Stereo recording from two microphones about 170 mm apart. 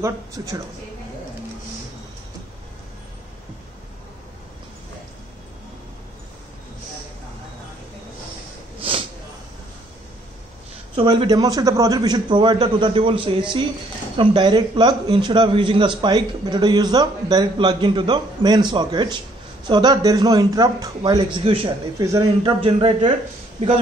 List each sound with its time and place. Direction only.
0.0 s a man's voice: 20° right (ahead or behind)
8.7 s snort: 35° right (ahead or behind)
11.0 s a man's voice: 30° right (ahead or behind)
21.9 s a man's voice: 20° right (ahead or behind)
22.6 s a man's voice: 30° right (ahead or behind)